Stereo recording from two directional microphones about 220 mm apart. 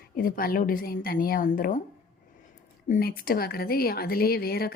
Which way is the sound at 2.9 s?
40° left (ahead or behind).